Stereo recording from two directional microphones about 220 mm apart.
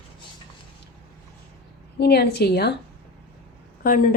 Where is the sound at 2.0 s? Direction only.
45° left (ahead or behind).